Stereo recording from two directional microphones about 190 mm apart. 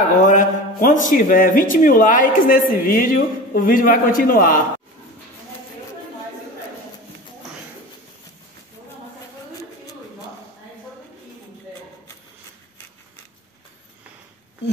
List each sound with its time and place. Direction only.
0.2 s a man's voice: 40° left (ahead or behind)